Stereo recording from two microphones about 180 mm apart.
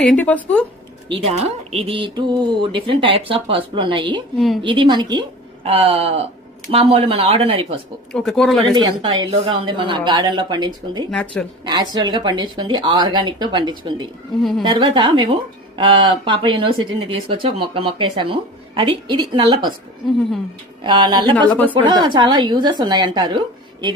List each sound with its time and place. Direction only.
0.0 s a woman's voice: 5° left (ahead or behind)
1.0 s speech: 30° right (ahead or behind)
4.4 s speech: centre (ahead or behind)
4.6 s speech: 30° right (ahead or behind)
8.1 s speech: 5° left (ahead or behind)
8.7 s speech: 25° right (ahead or behind)
11.1 s a woman's voice: 5° left (ahead or behind)
11.6 s speech: 25° right (ahead or behind)
20.8 s speech: 25° right (ahead or behind)